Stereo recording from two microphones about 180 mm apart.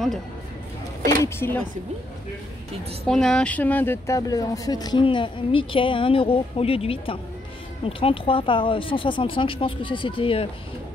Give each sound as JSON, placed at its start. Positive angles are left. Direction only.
{"t": 1.2, "sound": "speech", "side_deg": 15}
{"t": 3.1, "sound": "speech", "side_deg": 5}